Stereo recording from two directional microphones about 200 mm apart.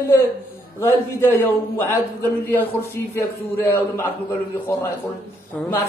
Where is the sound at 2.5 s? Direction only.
10° left (ahead or behind).